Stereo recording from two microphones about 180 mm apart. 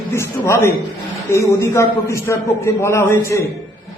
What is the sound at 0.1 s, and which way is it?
A man's voice, 15° left (ahead or behind).